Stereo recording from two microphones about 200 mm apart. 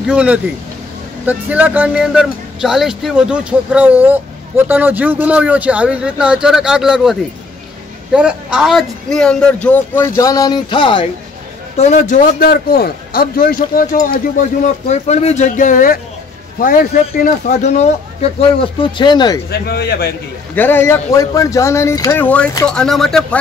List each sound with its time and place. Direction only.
0.0 s speech: 5° right (ahead or behind); by 11.1 s 25° left (ahead or behind)
11.7 s a man's voice: 35° left (ahead or behind)
17.2 s a man's voice: 35° left (ahead or behind)
18.6 s speech: 25° left (ahead or behind)
19.5 s speech: 50° left (ahead or behind)
20.5 s speech: 10° left (ahead or behind)
22.8 s speech: centre (ahead or behind)